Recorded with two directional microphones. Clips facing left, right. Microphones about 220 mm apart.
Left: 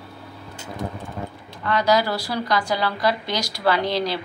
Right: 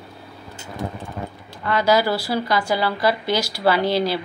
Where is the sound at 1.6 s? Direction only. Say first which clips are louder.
Right 2 dB; 5° right (ahead or behind).